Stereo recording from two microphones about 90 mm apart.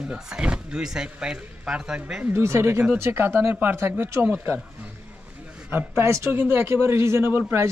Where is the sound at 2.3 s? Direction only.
30° right (ahead or behind).